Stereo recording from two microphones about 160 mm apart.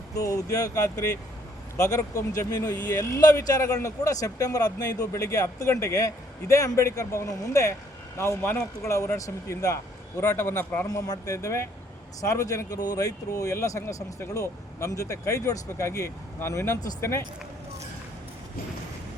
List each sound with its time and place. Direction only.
0.2 s speech: 20° left (ahead or behind)
10.8 s speech: 25° left (ahead or behind)